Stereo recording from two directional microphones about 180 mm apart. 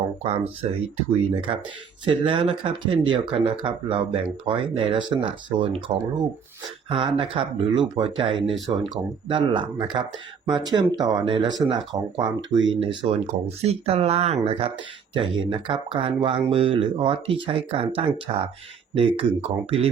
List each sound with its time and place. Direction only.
0.9 s speech: 30° right (ahead or behind)